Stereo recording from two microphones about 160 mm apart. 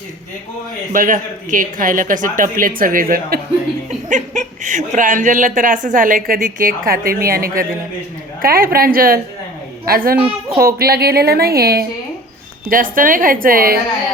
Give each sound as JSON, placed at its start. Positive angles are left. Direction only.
{"t": 0.9, "sound": "a woman's voice", "side_deg": -55}
{"t": 4.1, "sound": "a woman's voice", "side_deg": -50}
{"t": 12.7, "sound": "a woman's voice", "side_deg": -60}